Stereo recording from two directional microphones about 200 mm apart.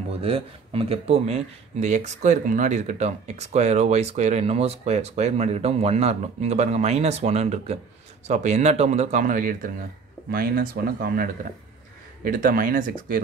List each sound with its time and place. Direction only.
0.2 s speech: 30° right (ahead or behind); by 11.2 s 50° right (ahead or behind)
12.3 s speech: 45° right (ahead or behind)